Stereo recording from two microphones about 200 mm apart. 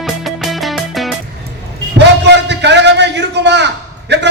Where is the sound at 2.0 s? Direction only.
60° right (ahead or behind).